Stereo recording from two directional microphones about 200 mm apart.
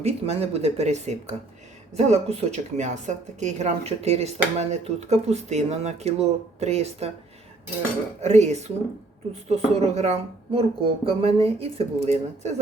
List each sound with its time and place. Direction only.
0.0 s speech: 30° right (ahead or behind)
8.2 s speech: 35° right (ahead or behind)